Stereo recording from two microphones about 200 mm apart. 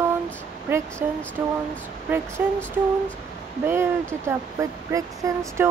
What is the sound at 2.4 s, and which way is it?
Speech, 10° right (ahead or behind).